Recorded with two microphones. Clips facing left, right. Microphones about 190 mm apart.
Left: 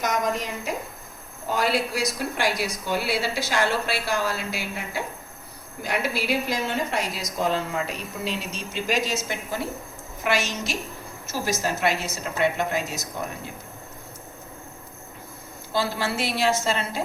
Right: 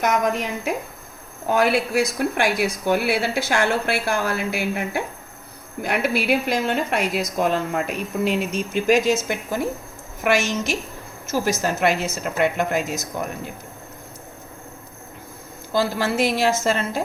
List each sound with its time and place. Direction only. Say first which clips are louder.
0.0 s a woman's voice: right 4 dB; 60° right (ahead or behind)
15.7 s a woman's voice: right 5 dB; 45° right (ahead or behind)